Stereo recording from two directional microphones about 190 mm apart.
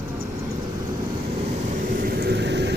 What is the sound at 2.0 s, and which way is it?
Vehicle, 55° right (ahead or behind).